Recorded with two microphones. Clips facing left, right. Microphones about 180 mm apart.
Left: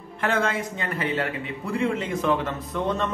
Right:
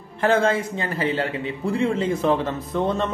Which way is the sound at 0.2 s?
35° right (ahead or behind).